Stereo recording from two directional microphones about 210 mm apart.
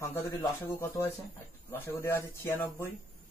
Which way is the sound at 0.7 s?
10° left (ahead or behind).